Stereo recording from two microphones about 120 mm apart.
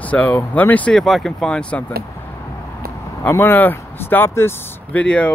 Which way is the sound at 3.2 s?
15° left (ahead or behind).